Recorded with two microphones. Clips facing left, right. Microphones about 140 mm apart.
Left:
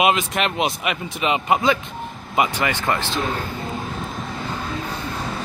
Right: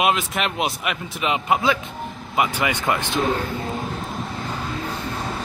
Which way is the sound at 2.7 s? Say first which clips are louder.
Even; 20° right (ahead or behind).